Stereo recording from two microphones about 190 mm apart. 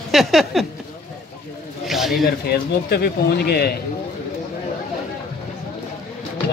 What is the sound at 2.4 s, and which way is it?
Speech, 55° left (ahead or behind).